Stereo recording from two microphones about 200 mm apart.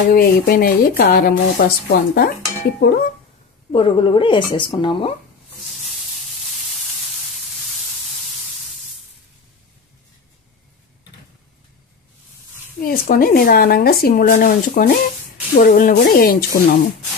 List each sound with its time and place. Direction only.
0.1 s speech: 50° left (ahead or behind)
3.7 s a woman's voice: 25° left (ahead or behind)
12.8 s speech: 50° left (ahead or behind)